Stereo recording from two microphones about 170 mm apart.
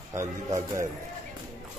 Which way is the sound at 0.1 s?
15° right (ahead or behind).